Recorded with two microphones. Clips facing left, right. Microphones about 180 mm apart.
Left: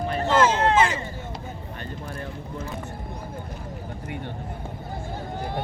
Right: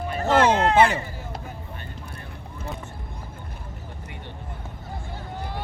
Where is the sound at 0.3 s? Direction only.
60° right (ahead or behind).